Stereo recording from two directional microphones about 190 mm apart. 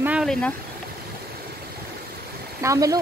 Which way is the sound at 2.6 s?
15° right (ahead or behind).